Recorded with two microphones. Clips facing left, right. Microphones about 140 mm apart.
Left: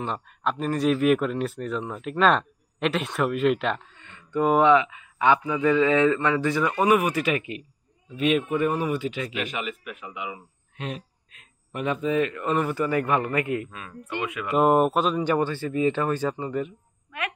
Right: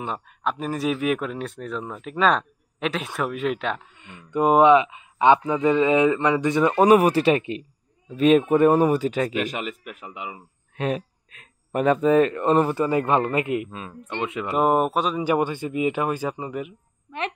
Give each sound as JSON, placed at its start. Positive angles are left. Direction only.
{"t": 0.0, "sound": "speech", "side_deg": -5}
{"t": 4.0, "sound": "a man's voice", "side_deg": -15}
{"t": 6.8, "sound": "speech", "side_deg": -35}
{"t": 10.8, "sound": "speech", "side_deg": -50}
{"t": 11.7, "sound": "a man's voice", "side_deg": -40}
{"t": 14.5, "sound": "speech", "side_deg": 0}
{"t": 15.3, "sound": "speech", "side_deg": -15}